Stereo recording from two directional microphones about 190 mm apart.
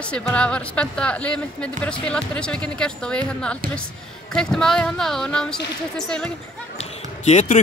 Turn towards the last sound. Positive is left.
turn(degrees=35)  # may be behind; listen again after turning